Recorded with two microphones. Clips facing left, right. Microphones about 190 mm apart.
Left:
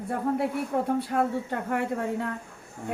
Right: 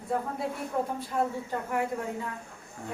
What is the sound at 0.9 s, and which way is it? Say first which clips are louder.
Speech: left 4 dB; 70° left (ahead or behind).